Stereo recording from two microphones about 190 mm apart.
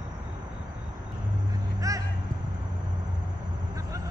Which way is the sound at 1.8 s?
15° right (ahead or behind).